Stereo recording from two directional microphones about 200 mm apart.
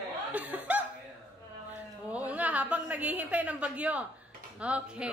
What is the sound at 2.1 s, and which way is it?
A woman's voice, 5° right (ahead or behind).